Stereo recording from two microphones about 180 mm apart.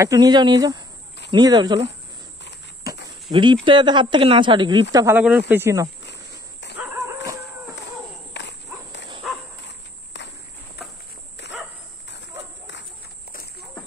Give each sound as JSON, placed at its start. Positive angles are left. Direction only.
{"t": 0.0, "sound": "speech", "side_deg": -20}
{"t": 3.3, "sound": "speech", "side_deg": -25}
{"t": 4.9, "sound": "speech", "side_deg": -15}
{"t": 6.8, "sound": "dog", "side_deg": -15}
{"t": 8.3, "sound": "cricket", "side_deg": 75}
{"t": 9.2, "sound": "a sound", "side_deg": 0}
{"t": 10.1, "sound": "cricket", "side_deg": 75}
{"t": 13.3, "sound": "a sound", "side_deg": 60}